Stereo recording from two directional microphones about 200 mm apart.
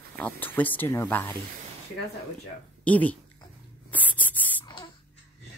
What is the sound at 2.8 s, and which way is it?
Speech, 5° left (ahead or behind).